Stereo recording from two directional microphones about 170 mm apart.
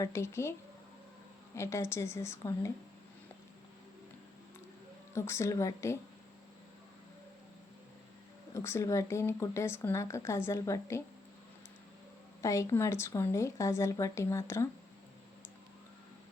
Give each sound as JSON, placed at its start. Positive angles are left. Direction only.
{"t": 0.0, "sound": "speech", "side_deg": 15}
{"t": 1.5, "sound": "speech", "side_deg": 15}
{"t": 5.1, "sound": "speech", "side_deg": 15}
{"t": 8.5, "sound": "speech", "side_deg": 15}
{"t": 12.4, "sound": "speech", "side_deg": 20}